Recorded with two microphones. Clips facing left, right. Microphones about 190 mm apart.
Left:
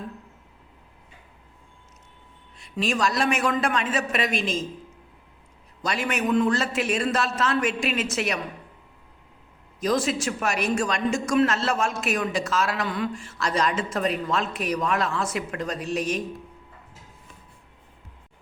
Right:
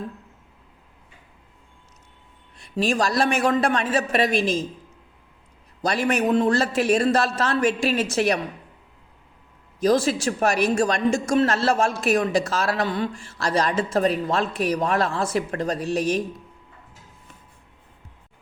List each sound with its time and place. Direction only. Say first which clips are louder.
2.6 s a woman's voice: right 3 dB; 35° right (ahead or behind)
5.8 s a woman's voice: right 5 dB; 35° right (ahead or behind)
9.8 s a woman's voice: right 4 dB; 35° right (ahead or behind)